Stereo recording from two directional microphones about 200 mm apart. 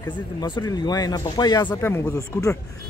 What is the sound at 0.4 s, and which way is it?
Speech, 20° left (ahead or behind).